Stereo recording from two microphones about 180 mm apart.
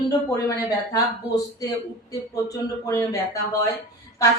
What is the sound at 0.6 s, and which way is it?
Speech, 20° left (ahead or behind).